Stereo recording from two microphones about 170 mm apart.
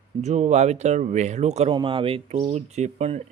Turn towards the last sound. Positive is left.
turn(degrees=-40)  # may be behind; listen again after turning